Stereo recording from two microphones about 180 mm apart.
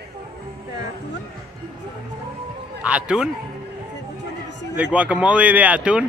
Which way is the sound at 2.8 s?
5° right (ahead or behind).